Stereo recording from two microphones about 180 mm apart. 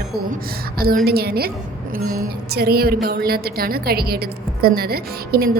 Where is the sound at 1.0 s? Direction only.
60° right (ahead or behind).